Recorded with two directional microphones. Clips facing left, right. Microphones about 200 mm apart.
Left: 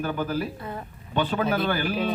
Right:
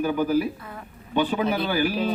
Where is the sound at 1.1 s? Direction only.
10° right (ahead or behind).